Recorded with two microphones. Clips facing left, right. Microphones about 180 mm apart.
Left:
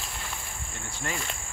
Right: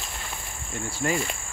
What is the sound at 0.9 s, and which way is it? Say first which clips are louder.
Cricket: right 8 dB; 10° right (ahead or behind).